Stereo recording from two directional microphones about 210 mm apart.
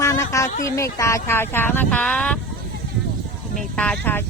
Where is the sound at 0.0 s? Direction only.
15° left (ahead or behind).